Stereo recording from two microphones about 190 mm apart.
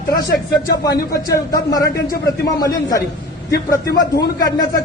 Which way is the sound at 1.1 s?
15° left (ahead or behind).